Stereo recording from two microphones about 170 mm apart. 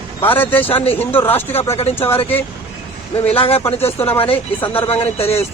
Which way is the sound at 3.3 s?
35° left (ahead or behind).